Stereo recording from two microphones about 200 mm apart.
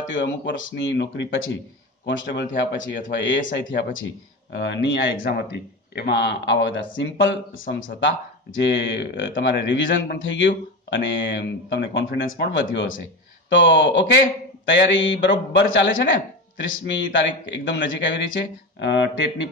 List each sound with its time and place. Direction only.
0.1 s speech: 65° left (ahead or behind)
5.2 s speech: 50° left (ahead or behind)